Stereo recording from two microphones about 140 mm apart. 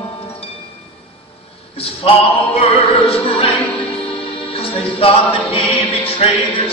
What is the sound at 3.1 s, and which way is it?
Music, 45° left (ahead or behind).